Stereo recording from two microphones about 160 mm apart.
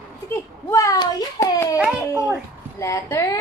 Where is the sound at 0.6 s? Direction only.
20° left (ahead or behind).